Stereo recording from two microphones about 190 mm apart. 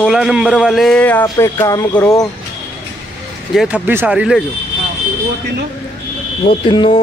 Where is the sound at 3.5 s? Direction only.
5° right (ahead or behind).